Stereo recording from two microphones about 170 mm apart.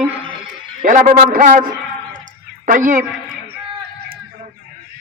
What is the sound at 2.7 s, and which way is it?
Speech, 50° right (ahead or behind).